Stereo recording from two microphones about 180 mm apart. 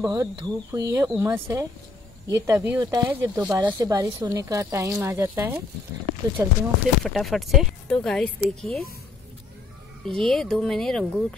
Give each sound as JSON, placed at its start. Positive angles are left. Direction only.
{"t": 0.0, "sound": "speech", "side_deg": -15}
{"t": 7.1, "sound": "speech", "side_deg": 0}
{"t": 10.0, "sound": "speech", "side_deg": 0}